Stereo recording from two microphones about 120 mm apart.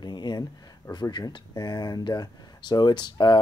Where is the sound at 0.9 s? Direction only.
35° left (ahead or behind).